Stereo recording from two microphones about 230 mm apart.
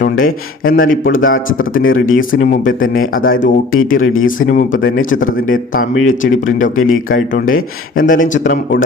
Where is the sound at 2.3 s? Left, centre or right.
Left.